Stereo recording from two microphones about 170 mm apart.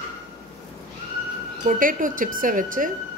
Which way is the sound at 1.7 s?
55° right (ahead or behind).